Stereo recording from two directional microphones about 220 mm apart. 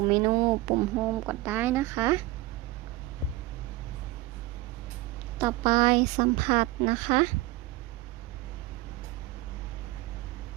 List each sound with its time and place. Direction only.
0.1 s speech: 20° right (ahead or behind)
5.4 s speech: 15° right (ahead or behind)